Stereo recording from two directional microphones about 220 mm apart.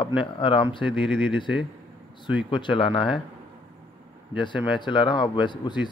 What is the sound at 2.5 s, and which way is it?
Speech, 20° left (ahead or behind).